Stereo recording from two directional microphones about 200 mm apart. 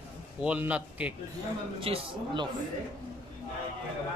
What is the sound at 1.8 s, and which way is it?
Speech, 25° right (ahead or behind).